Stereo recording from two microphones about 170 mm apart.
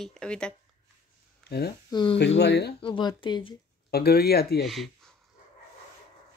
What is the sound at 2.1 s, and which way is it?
Speech, 85° left.